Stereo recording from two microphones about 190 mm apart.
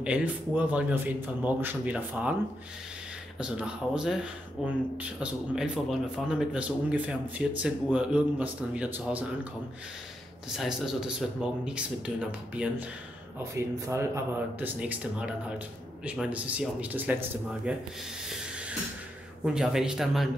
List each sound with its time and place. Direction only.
0.0 s a man's voice: 5° right (ahead or behind)
3.3 s a man's voice: 5° right (ahead or behind)
10.5 s a man's voice: centre (ahead or behind)
19.4 s a man's voice: 5° right (ahead or behind)